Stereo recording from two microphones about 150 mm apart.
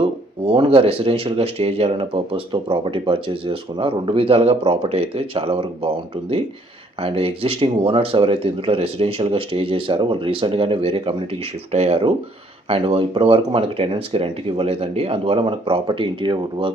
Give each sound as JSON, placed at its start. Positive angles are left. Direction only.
{"t": 0.4, "sound": "speech", "side_deg": -35}
{"t": 7.0, "sound": "speech", "side_deg": -40}